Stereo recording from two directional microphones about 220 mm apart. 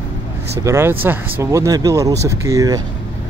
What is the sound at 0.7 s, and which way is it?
Speech, 10° right (ahead or behind).